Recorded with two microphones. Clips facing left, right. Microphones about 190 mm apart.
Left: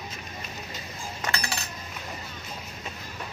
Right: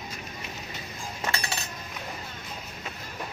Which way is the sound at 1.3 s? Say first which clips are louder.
Left 1 dB; 25° right (ahead or behind).